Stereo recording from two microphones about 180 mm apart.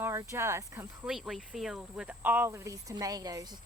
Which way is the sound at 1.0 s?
Centre (ahead or behind).